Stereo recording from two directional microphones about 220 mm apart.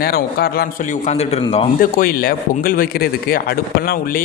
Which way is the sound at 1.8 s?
40° left (ahead or behind).